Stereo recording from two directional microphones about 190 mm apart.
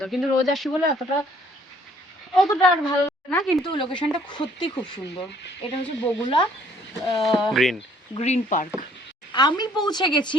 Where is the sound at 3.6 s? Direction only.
25° left (ahead or behind).